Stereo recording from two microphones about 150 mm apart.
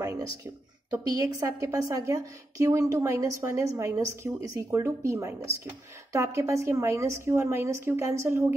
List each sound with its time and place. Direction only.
0.9 s a woman's voice: 20° right (ahead or behind)